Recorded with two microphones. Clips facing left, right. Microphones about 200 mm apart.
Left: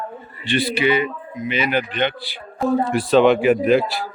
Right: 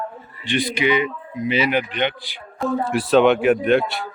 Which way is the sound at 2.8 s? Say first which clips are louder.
Even; centre (ahead or behind).